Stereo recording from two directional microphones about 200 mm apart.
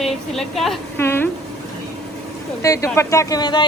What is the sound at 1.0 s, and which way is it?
Speech, 10° left (ahead or behind).